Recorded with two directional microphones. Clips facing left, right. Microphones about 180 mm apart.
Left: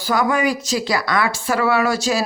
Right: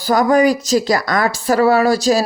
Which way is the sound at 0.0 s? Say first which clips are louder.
Right 6 dB; 40° right (ahead or behind).